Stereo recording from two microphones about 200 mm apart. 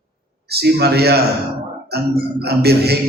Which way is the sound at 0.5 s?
55° right (ahead or behind).